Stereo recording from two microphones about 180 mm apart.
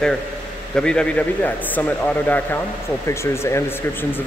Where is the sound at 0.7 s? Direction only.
5° left (ahead or behind).